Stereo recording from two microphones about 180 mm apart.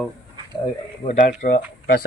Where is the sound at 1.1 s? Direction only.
45° left (ahead or behind).